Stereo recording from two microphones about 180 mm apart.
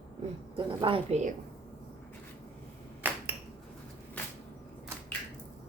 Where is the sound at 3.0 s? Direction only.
10° right (ahead or behind).